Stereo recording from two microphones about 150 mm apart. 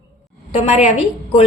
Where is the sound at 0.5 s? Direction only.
50° left (ahead or behind).